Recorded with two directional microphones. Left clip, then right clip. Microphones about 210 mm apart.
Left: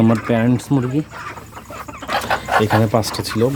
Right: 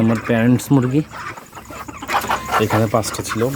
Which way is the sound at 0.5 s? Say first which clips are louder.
Right 2 dB; 15° right (ahead or behind).